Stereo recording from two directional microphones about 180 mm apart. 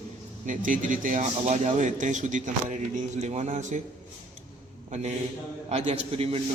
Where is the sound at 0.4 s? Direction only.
45° right (ahead or behind).